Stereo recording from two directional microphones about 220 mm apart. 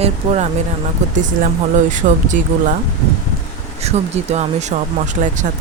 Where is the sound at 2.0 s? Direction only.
35° right (ahead or behind).